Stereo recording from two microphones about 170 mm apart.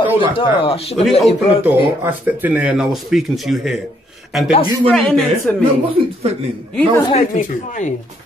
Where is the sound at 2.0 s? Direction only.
10° right (ahead or behind); by 5.6 s 5° left (ahead or behind).